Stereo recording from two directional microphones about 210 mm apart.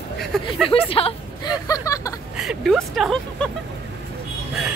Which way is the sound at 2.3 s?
5° right (ahead or behind).